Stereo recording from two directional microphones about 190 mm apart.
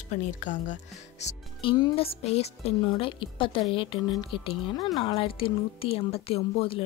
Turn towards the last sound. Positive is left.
turn(degrees=30)  # may be behind; listen again after turning